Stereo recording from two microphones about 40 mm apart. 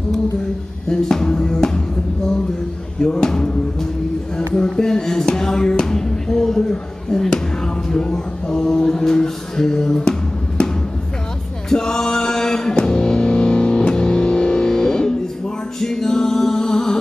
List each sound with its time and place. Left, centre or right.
0.8 s music: centre
3.0 s speech: centre
4.4 s a sound: centre
11.7 s music: centre